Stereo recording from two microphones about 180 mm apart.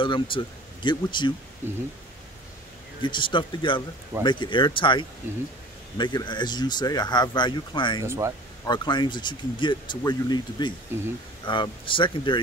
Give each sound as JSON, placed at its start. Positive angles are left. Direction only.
{"t": 0.0, "sound": "speech", "side_deg": 25}
{"t": 1.6, "sound": "speech", "side_deg": -10}
{"t": 3.0, "sound": "speech", "side_deg": 25}
{"t": 8.0, "sound": "speech", "side_deg": -15}
{"t": 8.6, "sound": "speech", "side_deg": 25}
{"t": 10.9, "sound": "speech", "side_deg": -15}
{"t": 11.4, "sound": "speech", "side_deg": 25}